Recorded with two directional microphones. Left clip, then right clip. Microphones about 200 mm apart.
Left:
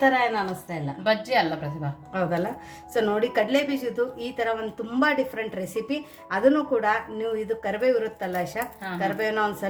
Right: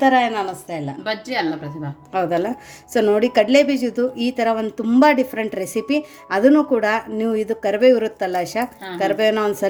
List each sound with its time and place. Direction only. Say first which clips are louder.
0.0 s a woman's voice: right 5 dB; 40° right (ahead or behind)
1.0 s speech: left 1 dB; 5° right (ahead or behind)
2.1 s a woman's voice: right 7 dB; 40° right (ahead or behind)